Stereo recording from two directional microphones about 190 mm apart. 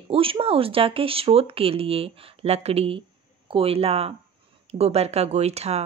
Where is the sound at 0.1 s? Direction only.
30° right (ahead or behind).